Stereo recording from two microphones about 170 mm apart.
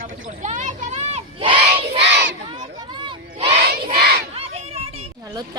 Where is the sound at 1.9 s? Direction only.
90° right.